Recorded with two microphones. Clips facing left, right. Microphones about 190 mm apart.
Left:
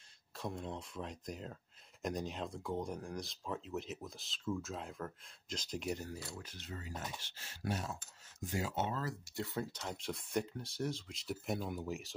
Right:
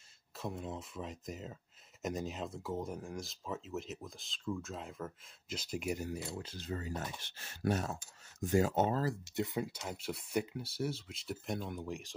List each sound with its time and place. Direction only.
0.4 s speech: 5° right (ahead or behind)
6.1 s speech: 25° right (ahead or behind)
9.2 s speech: 20° right (ahead or behind); by 12.1 s 5° left (ahead or behind)